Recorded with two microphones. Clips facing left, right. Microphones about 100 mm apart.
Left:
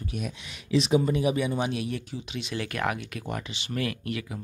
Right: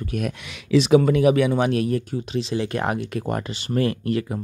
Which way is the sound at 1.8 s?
45° right (ahead or behind).